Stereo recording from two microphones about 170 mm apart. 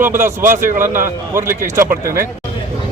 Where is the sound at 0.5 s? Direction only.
50° right (ahead or behind).